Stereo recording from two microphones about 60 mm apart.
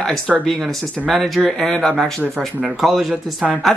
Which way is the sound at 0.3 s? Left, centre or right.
Centre.